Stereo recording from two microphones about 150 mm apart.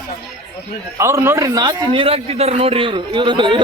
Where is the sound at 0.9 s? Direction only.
20° right (ahead or behind).